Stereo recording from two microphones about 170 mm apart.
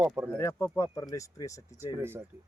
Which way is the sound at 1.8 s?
15° right (ahead or behind).